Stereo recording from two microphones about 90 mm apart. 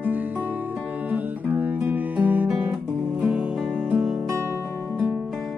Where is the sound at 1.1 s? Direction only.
20° right (ahead or behind).